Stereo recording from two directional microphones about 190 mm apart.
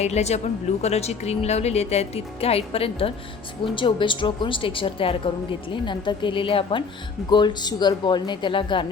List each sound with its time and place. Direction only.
0.0 s a woman's voice: 35° left (ahead or behind)